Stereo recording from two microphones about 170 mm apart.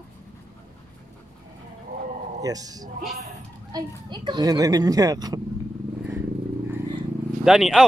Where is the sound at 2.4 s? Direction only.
20° right (ahead or behind).